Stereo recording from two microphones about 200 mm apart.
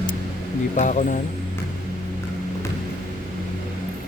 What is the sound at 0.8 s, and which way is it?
Speech, 40° left (ahead or behind).